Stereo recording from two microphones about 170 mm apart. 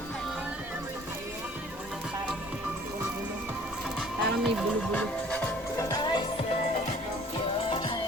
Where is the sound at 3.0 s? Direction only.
5° right (ahead or behind).